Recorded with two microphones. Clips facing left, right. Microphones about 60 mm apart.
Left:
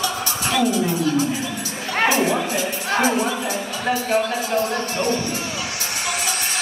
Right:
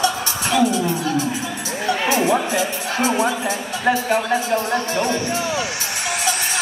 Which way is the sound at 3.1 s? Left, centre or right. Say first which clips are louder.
Right 2 dB; centre.